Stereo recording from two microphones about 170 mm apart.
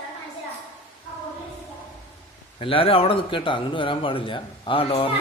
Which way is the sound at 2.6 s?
35° left (ahead or behind).